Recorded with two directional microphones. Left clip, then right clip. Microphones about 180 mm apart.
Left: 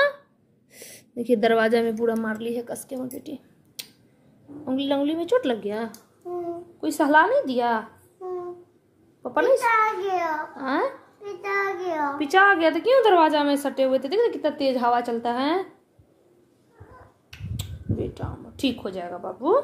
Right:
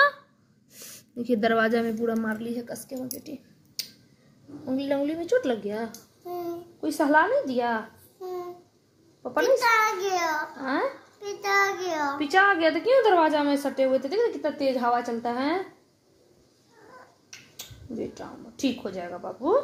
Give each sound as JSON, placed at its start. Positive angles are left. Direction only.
{"t": 0.8, "sound": "a sound", "side_deg": 0}
{"t": 1.3, "sound": "a child's voice", "side_deg": 10}
{"t": 4.6, "sound": "a child's voice", "side_deg": 10}
{"t": 9.2, "sound": "a child's voice", "side_deg": 10}
{"t": 17.3, "sound": "speech", "side_deg": 10}